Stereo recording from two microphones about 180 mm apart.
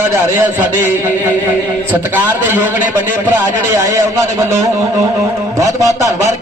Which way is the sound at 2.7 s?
45° left (ahead or behind).